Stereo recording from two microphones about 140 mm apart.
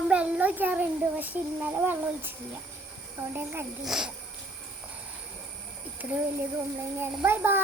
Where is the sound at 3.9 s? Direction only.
5° right (ahead or behind).